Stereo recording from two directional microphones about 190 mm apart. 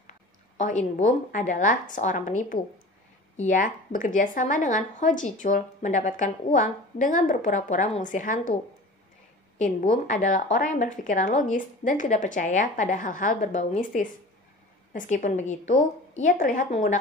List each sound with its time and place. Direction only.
0.6 s speech: 40° left (ahead or behind)
9.6 s a woman's voice: 40° left (ahead or behind)